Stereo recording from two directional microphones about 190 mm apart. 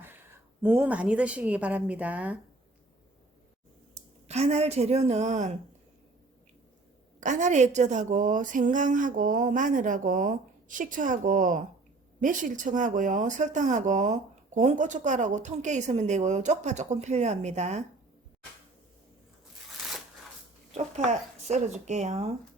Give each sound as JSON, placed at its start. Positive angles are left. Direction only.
{"t": 0.6, "sound": "a woman's voice", "side_deg": -10}
{"t": 4.3, "sound": "speech", "side_deg": -35}
{"t": 7.2, "sound": "a woman's voice", "side_deg": -40}
{"t": 19.8, "sound": "shuffling cards", "side_deg": 0}
{"t": 20.7, "sound": "speech", "side_deg": -35}